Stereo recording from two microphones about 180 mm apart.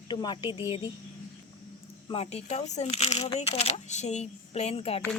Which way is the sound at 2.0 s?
35° left (ahead or behind).